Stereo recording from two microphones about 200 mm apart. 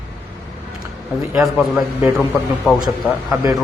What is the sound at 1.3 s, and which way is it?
A man's voice, centre (ahead or behind).